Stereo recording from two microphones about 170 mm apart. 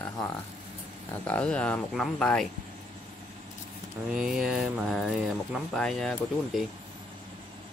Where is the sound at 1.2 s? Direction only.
5° left (ahead or behind).